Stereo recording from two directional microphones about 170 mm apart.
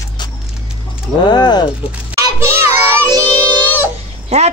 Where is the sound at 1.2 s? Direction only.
25° left (ahead or behind).